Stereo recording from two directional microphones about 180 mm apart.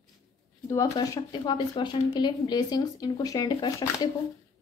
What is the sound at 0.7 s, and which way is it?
Speech, 20° left (ahead or behind).